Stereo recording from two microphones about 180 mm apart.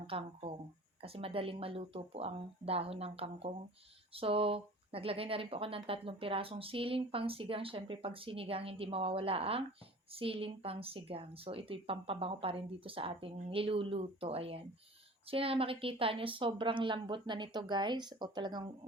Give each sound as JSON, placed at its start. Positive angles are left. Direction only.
{"t": 0.1, "sound": "speech", "side_deg": -30}